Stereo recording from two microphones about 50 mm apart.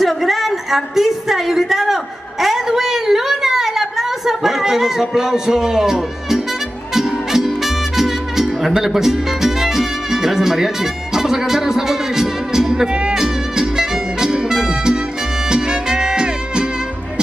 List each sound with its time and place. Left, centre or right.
0.0 s a woman's voice: centre
6.9 s music: centre